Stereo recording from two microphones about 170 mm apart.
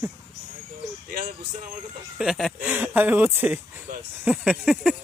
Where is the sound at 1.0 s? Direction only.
55° right (ahead or behind).